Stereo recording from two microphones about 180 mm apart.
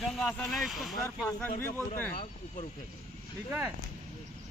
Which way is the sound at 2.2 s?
40° left (ahead or behind).